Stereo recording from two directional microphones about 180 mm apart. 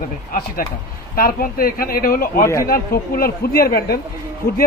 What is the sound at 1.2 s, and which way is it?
Speech, 55° left (ahead or behind).